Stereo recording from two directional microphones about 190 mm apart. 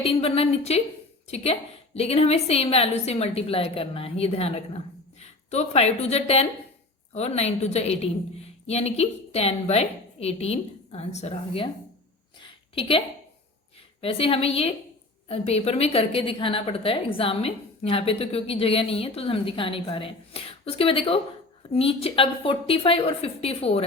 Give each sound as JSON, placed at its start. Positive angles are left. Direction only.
{"t": 0.0, "sound": "a woman's voice", "side_deg": 30}
{"t": 12.4, "sound": "a sound", "side_deg": 30}
{"t": 14.0, "sound": "a woman's voice", "side_deg": 30}